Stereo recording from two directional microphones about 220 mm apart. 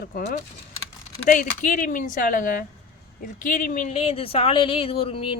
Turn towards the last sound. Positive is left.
turn(degrees=25)  # may be behind; listen again after turning